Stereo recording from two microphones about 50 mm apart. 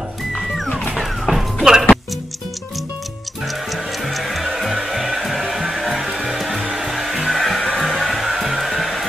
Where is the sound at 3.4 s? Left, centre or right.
Centre.